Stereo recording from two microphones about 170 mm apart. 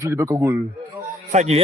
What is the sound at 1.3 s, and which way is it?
Speech, 45° right (ahead or behind).